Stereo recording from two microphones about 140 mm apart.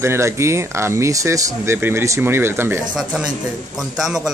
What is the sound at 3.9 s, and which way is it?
Speech, 5° right (ahead or behind).